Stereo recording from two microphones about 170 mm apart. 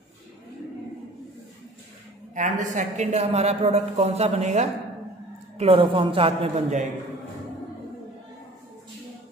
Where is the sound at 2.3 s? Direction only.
50° right (ahead or behind).